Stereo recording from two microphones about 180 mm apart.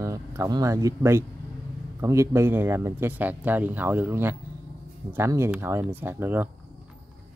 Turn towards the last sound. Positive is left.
turn(degrees=-10)  # may be behind; listen again after turning